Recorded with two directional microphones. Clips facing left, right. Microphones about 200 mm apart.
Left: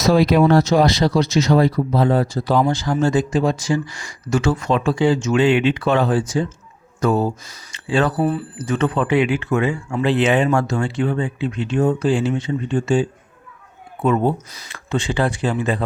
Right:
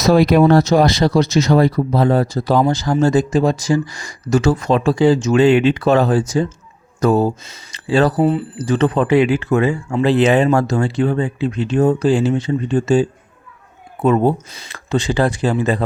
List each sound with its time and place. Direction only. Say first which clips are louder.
0.0 s speech: right 3 dB; 45° right (ahead or behind)
7.7 s a sound: right 4 dB; 35° right (ahead or behind)
8.2 s speech: right 4 dB; 20° right (ahead or behind); by 15.8 s 40° right (ahead or behind)